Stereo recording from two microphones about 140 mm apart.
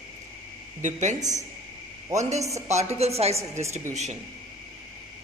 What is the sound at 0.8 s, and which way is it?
A woman's voice, 60° right (ahead or behind).